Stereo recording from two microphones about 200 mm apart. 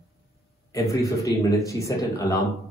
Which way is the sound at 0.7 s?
15° left (ahead or behind).